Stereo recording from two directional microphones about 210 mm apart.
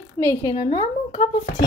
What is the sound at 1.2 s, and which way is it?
Speech, 40° left (ahead or behind).